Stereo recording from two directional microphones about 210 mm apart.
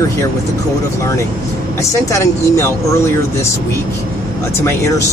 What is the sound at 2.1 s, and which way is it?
Speech, 15° left (ahead or behind).